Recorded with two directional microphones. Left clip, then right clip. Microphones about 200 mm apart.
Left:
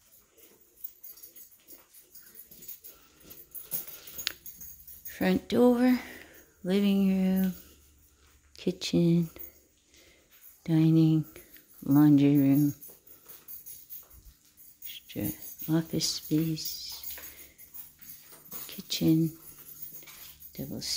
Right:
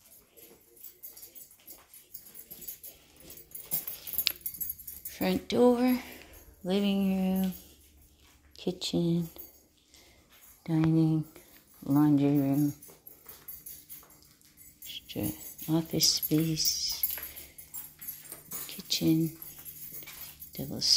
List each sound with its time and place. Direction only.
5.0 s speech: 30° left (ahead or behind)
8.5 s a sound: 40° left (ahead or behind)
8.9 s speech: 40° left (ahead or behind)
10.6 s speech: 40° left (ahead or behind)
14.9 s tambourine: 20° left (ahead or behind)
15.6 s speech: 25° left (ahead or behind)
18.7 s a sound: 35° left (ahead or behind)
20.5 s speech: 15° left (ahead or behind)